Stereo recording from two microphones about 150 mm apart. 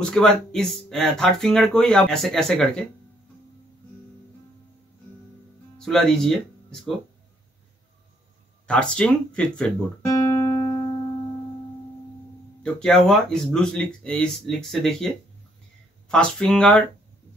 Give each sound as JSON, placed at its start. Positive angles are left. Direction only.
{"t": 0.1, "sound": "speech", "side_deg": 5}
{"t": 5.9, "sound": "speech", "side_deg": 5}
{"t": 8.6, "sound": "speech", "side_deg": 5}
{"t": 10.0, "sound": "music", "side_deg": 20}
{"t": 12.6, "sound": "speech", "side_deg": 5}